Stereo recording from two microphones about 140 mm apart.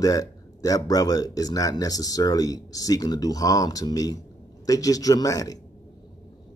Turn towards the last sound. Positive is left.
turn(degrees=25)  # may be behind; listen again after turning